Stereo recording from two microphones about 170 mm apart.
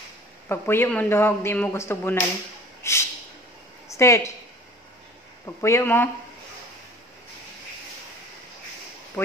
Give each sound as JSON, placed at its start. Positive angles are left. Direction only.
{"t": 0.5, "sound": "speech", "side_deg": 15}
{"t": 2.8, "sound": "a sound", "side_deg": 15}
{"t": 3.9, "sound": "speech", "side_deg": 15}
{"t": 5.6, "sound": "speech", "side_deg": 15}